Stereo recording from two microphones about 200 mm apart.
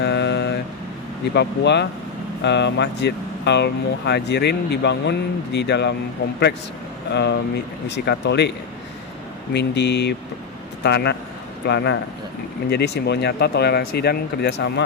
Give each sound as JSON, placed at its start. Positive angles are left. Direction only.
{"t": 0.0, "sound": "vehicle", "side_deg": 60}
{"t": 1.3, "sound": "speech", "side_deg": 60}
{"t": 7.1, "sound": "speech", "side_deg": 60}